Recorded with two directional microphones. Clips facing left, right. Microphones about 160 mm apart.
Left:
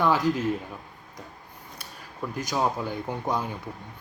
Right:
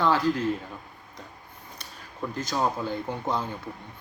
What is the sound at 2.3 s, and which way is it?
Speech, 10° left (ahead or behind).